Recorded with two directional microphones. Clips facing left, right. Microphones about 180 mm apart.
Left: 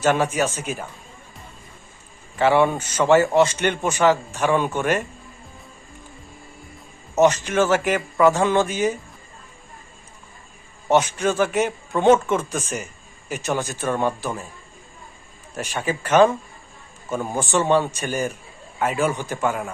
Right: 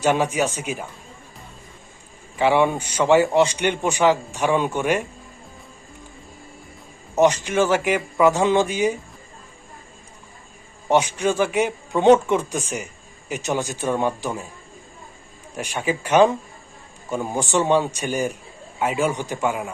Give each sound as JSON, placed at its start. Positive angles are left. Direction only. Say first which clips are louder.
{"t": 0.0, "sound": "a man's voice", "louder": "even", "side_deg": -15}
{"t": 2.4, "sound": "a man's voice", "louder": "left 1 dB", "side_deg": -15}
{"t": 7.2, "sound": "a man's voice", "louder": "even", "side_deg": -15}
{"t": 10.8, "sound": "a man's voice", "louder": "even", "side_deg": -15}
{"t": 15.5, "sound": "a man's voice", "louder": "right 1 dB", "side_deg": -15}